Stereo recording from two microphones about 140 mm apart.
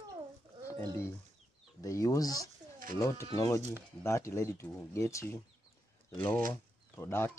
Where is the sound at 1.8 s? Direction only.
25° left (ahead or behind).